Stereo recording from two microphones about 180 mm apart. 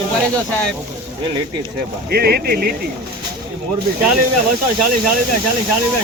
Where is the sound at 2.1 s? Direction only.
60° right (ahead or behind).